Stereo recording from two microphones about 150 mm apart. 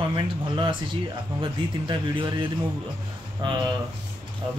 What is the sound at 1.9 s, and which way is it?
Speech, 35° right (ahead or behind).